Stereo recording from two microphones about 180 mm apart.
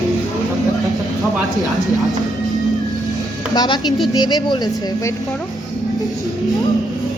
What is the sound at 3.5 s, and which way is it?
Music, 20° left (ahead or behind).